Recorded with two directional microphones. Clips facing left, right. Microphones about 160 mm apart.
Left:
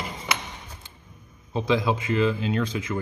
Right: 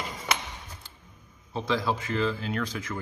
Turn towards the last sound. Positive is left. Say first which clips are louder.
# left 5 dB
turn(degrees=20)  # may be behind; listen again after turning